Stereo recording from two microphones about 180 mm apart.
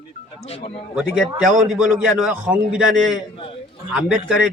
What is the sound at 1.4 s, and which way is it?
Speech, 45° right (ahead or behind).